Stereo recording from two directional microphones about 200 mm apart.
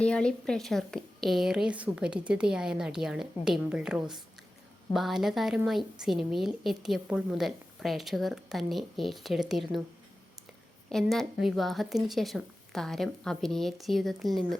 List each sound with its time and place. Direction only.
0.0 s a woman's voice: 5° left (ahead or behind)
10.8 s a woman's voice: centre (ahead or behind)